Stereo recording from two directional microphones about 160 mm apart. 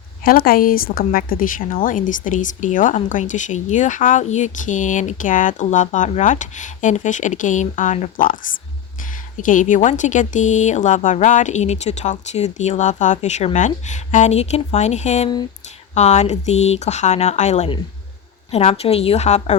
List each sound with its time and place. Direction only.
0.3 s speech: 70° left (ahead or behind)
9.4 s a woman's voice: 55° left (ahead or behind)